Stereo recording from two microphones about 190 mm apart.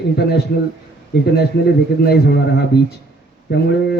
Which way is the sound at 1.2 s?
55° left (ahead or behind).